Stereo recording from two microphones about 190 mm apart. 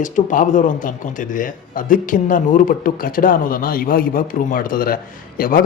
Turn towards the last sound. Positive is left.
turn(degrees=45)  # may be behind; listen again after turning